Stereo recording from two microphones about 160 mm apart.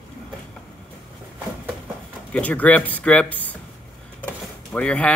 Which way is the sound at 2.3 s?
10° left (ahead or behind).